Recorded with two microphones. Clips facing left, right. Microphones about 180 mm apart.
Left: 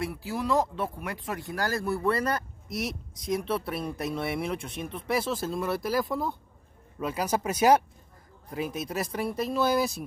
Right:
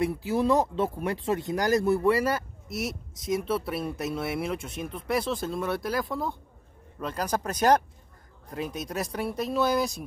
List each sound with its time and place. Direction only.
0.0 s speech: 20° right (ahead or behind); by 10.0 s centre (ahead or behind)